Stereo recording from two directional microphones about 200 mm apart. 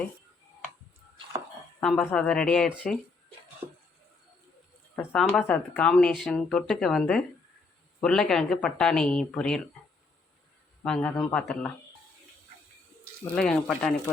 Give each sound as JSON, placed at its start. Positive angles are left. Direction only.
{"t": 1.8, "sound": "speech", "side_deg": 5}
{"t": 3.6, "sound": "a sound", "side_deg": -25}
{"t": 4.9, "sound": "speech", "side_deg": 5}
{"t": 10.8, "sound": "speech", "side_deg": 5}
{"t": 13.3, "sound": "speech", "side_deg": 5}